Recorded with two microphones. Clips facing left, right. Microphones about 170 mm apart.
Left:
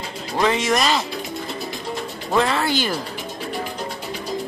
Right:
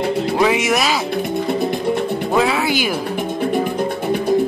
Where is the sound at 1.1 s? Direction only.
55° right (ahead or behind).